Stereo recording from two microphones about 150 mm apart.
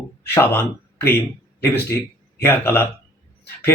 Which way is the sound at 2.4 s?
15° left (ahead or behind).